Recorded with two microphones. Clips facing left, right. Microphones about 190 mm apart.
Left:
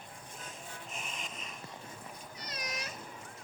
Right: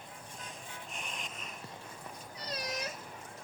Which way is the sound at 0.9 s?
Centre (ahead or behind).